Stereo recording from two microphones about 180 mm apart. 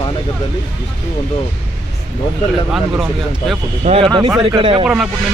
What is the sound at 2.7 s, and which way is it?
Speech, 5° right (ahead or behind).